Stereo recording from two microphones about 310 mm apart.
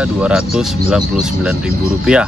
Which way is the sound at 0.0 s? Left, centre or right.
Centre.